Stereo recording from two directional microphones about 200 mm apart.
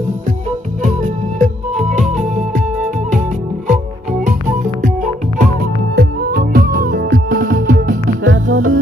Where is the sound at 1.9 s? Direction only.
40° right (ahead or behind).